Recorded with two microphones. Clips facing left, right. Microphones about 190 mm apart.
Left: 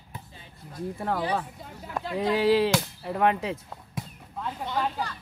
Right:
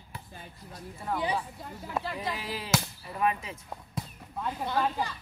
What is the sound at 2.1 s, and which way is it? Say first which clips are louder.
Speech: left 13 dB; 75° left (ahead or behind).